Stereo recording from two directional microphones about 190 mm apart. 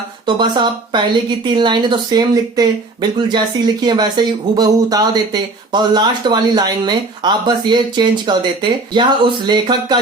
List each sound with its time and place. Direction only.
0.3 s speech: 25° right (ahead or behind)